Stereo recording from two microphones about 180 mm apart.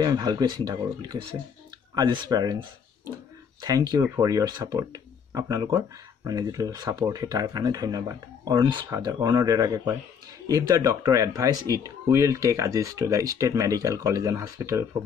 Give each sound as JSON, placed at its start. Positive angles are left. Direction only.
{"t": 0.0, "sound": "speech", "side_deg": -25}
{"t": 3.6, "sound": "speech", "side_deg": -20}